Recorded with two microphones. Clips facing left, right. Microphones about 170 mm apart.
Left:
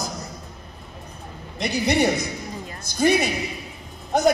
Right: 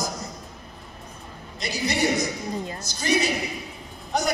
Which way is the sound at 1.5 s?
60° left (ahead or behind).